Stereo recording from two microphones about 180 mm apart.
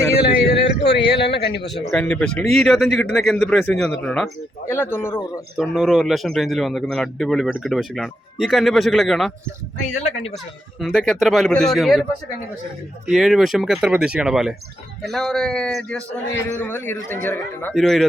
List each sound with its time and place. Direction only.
0.3 s a sound: 70° left (ahead or behind)
1.9 s a man's voice: 5° left (ahead or behind)
5.5 s speech: centre (ahead or behind)
9.9 s speech: 30° left (ahead or behind)
10.3 s speech: centre (ahead or behind)
13.1 s a man's voice: centre (ahead or behind)
17.7 s speech: centre (ahead or behind)